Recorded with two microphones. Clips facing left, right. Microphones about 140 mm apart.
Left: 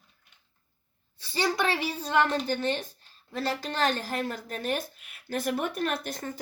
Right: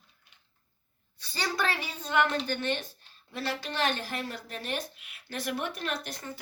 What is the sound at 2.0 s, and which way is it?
A woman's voice, 35° left (ahead or behind).